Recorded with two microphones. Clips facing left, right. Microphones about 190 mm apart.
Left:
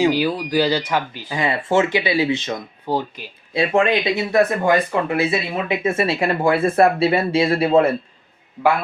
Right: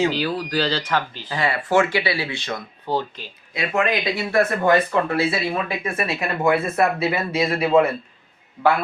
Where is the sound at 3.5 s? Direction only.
30° left (ahead or behind).